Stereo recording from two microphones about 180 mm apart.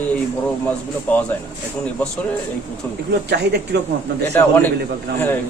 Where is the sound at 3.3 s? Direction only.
70° right (ahead or behind).